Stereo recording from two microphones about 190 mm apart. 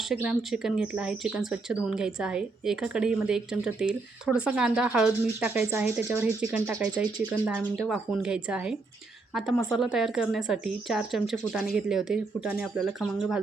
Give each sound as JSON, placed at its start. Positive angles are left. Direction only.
{"t": 0.1, "sound": "speech", "side_deg": 0}
{"t": 7.0, "sound": "speech", "side_deg": -5}